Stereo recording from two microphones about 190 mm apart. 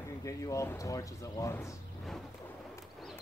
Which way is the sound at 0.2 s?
15° left (ahead or behind).